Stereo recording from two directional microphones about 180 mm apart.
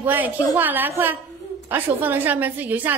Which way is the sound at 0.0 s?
10° right (ahead or behind).